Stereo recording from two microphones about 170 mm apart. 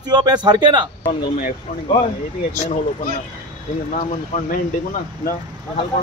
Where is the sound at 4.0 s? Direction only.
50° left (ahead or behind).